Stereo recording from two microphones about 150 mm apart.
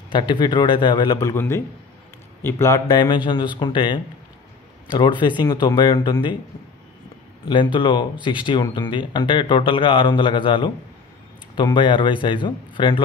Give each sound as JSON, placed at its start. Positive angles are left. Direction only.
{"t": 0.1, "sound": "speech", "side_deg": 30}
{"t": 3.0, "sound": "speech", "side_deg": 30}
{"t": 7.4, "sound": "speech", "side_deg": 30}